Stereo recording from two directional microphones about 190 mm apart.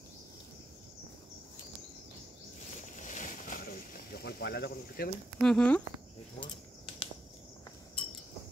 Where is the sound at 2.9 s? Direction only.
40° left (ahead or behind); by 5.1 s 60° left (ahead or behind).